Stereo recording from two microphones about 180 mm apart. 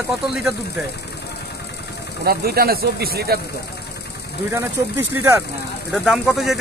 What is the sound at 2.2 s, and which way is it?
Speech, 60° right (ahead or behind).